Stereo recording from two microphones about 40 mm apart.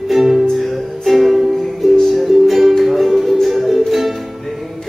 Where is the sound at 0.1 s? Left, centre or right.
Centre.